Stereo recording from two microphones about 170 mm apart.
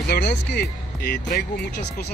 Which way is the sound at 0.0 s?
75° left (ahead or behind).